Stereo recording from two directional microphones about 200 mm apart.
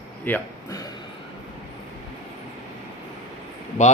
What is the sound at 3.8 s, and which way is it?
Speech, 35° left (ahead or behind).